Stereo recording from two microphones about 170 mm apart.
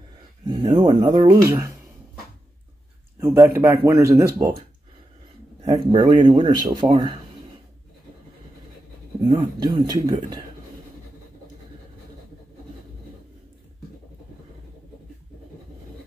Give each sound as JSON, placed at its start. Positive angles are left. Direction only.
{"t": 0.5, "sound": "speech", "side_deg": -30}
{"t": 3.2, "sound": "speech", "side_deg": -15}
{"t": 5.6, "sound": "speech", "side_deg": -25}
{"t": 9.3, "sound": "speech", "side_deg": -25}